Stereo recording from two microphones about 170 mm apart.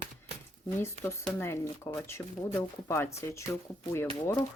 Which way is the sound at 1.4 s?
15° left (ahead or behind).